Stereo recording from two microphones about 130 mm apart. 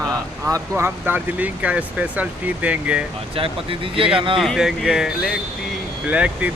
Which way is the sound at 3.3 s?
45° right (ahead or behind).